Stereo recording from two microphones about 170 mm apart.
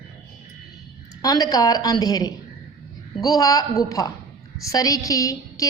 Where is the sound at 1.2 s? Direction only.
20° left (ahead or behind).